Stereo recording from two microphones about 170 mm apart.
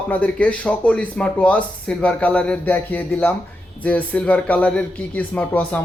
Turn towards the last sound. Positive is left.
turn(degrees=10)  # may be behind; listen again after turning